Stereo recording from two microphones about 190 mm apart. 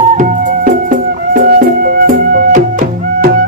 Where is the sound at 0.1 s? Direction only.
40° right (ahead or behind).